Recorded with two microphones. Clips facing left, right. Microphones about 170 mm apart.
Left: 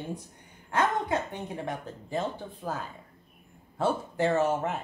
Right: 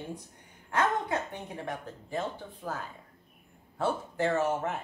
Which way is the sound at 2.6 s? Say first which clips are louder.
Left 2 dB; 25° left (ahead or behind).